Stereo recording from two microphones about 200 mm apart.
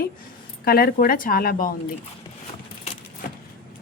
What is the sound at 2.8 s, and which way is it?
Keys jangling, 35° left (ahead or behind).